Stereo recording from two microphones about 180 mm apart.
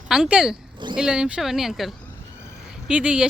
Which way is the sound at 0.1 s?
5° right (ahead or behind).